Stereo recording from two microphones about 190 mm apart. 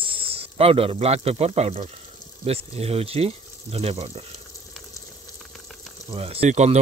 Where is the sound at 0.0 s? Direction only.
30° right (ahead or behind).